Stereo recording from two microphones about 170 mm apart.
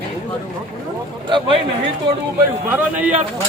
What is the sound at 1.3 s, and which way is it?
Speech, 30° right (ahead or behind).